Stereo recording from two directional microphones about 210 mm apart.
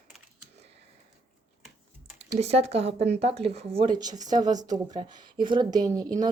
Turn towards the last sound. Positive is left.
turn(degrees=-20)  # may be behind; listen again after turning